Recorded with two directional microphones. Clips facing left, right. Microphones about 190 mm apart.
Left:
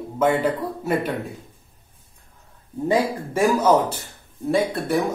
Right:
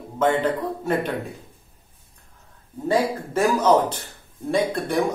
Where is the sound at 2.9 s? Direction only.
10° left (ahead or behind).